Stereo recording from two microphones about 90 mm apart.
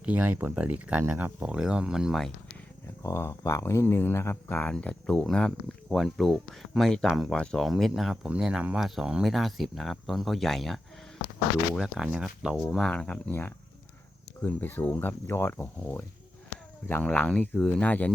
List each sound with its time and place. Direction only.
0.0 s speech: 20° right (ahead or behind)
1.4 s speech: 10° right (ahead or behind)
3.0 s speech: 30° left (ahead or behind)
4.7 s speech: 10° left (ahead or behind)
11.8 s speech: 5° right (ahead or behind)
12.6 s speech: 5° left (ahead or behind)
14.4 s speech: 20° left (ahead or behind)